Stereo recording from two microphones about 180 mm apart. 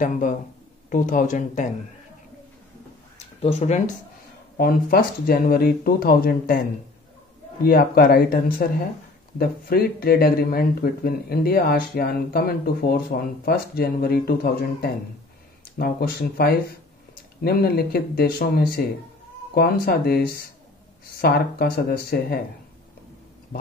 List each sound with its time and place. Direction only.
0.8 s speech: 45° left (ahead or behind)
3.3 s speech: 35° left (ahead or behind)
4.6 s speech: 55° left (ahead or behind)
7.6 s speech: 55° left (ahead or behind)